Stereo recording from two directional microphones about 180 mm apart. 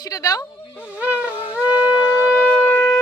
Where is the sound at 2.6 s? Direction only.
10° left (ahead or behind).